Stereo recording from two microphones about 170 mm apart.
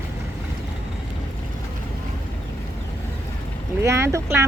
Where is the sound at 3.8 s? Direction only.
15° right (ahead or behind).